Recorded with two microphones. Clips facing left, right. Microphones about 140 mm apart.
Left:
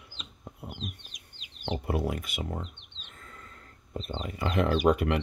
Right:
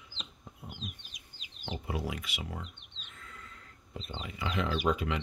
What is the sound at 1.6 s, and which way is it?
Speech, 60° left (ahead or behind).